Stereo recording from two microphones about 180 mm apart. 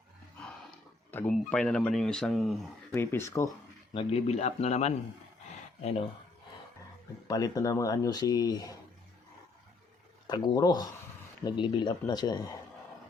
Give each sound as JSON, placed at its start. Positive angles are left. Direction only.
{"t": 1.1, "sound": "speech", "side_deg": 10}
{"t": 2.9, "sound": "speech", "side_deg": 15}
{"t": 3.9, "sound": "a man's voice", "side_deg": 35}
{"t": 7.3, "sound": "speech", "side_deg": 20}
{"t": 10.2, "sound": "speech", "side_deg": 20}